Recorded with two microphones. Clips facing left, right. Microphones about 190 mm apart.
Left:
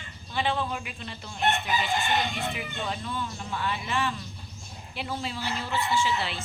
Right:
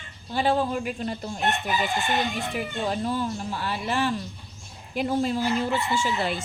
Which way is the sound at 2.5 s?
40° right (ahead or behind).